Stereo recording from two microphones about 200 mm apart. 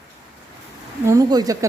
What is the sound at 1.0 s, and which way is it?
Speech, 20° right (ahead or behind).